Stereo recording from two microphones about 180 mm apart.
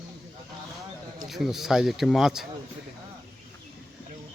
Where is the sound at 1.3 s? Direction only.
Centre (ahead or behind).